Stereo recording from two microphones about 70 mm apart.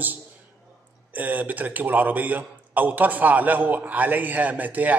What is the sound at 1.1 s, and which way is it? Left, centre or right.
A man's voice, right.